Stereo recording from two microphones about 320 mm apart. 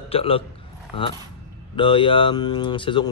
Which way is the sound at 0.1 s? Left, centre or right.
Centre.